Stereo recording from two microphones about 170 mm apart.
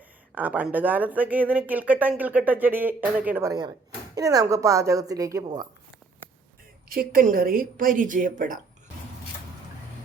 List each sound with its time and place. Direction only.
0.3 s speech: 10° right (ahead or behind)
3.5 s speech: 25° right (ahead or behind)
6.8 s speech: 60° right (ahead or behind)